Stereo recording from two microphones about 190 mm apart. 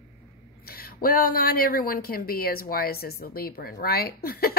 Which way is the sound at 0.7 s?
50° left (ahead or behind).